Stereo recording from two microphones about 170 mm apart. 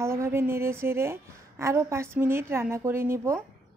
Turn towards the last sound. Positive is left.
turn(degrees=-15)  # may be behind; listen again after turning